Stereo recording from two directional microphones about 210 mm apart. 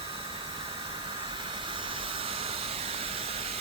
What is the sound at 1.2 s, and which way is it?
Steam, 25° right (ahead or behind).